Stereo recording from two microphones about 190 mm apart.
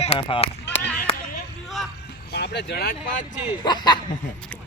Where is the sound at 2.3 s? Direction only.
60° left (ahead or behind).